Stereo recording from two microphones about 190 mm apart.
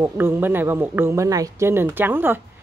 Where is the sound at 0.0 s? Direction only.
10° right (ahead or behind).